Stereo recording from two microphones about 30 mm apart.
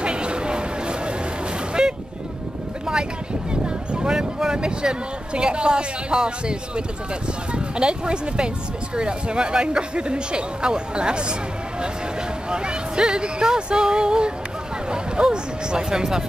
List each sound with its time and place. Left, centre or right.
0.0 s a sound: right
1.8 s vehicle: right
3.6 s a sound: right
4.6 s speech: right
7.5 s speech: right
12.4 s speech: right